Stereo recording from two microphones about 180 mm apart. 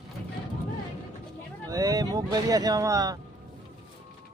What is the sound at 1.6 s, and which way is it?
Speech, 20° right (ahead or behind).